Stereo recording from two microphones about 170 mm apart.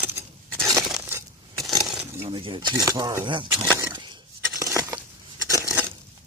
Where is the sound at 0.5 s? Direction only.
Centre (ahead or behind).